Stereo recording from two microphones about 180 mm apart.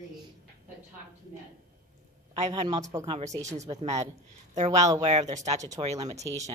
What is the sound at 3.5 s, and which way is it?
Speech, 40° right (ahead or behind).